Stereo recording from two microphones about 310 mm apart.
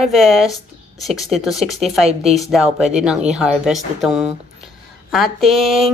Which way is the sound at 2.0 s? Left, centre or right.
Centre.